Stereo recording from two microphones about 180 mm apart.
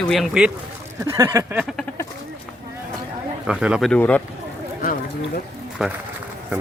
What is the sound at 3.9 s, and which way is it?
Speech, 10° left (ahead or behind).